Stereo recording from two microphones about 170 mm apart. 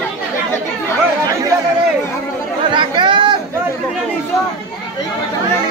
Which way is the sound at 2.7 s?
30° right (ahead or behind).